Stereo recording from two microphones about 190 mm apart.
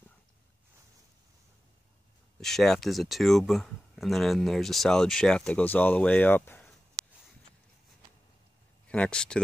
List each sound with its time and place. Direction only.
2.4 s speech: centre (ahead or behind)
8.8 s speech: 5° left (ahead or behind)